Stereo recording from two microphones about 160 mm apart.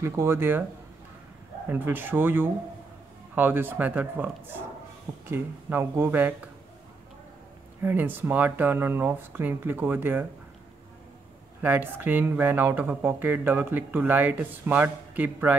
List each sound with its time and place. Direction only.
0.0 s speech: 15° right (ahead or behind)
1.7 s speech: 10° right (ahead or behind)
7.8 s speech: 10° right (ahead or behind)
11.6 s speech: 10° right (ahead or behind)